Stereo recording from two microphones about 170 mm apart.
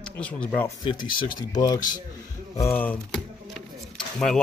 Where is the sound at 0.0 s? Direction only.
5° left (ahead or behind).